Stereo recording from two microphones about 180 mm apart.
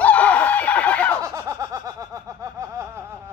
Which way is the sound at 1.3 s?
20° right (ahead or behind).